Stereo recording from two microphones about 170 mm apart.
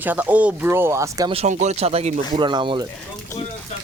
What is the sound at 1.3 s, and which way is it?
Speech, 40° right (ahead or behind).